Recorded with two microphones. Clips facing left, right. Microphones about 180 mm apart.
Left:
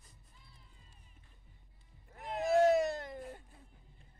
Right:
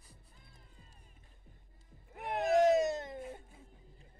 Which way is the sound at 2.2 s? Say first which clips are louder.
Right 2 dB; 65° right (ahead or behind).